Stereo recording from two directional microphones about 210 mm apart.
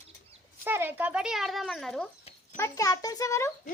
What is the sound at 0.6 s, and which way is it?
A child's voice, 10° right (ahead or behind).